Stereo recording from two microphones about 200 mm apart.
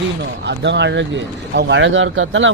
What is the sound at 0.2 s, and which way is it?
Speech, 60° right (ahead or behind).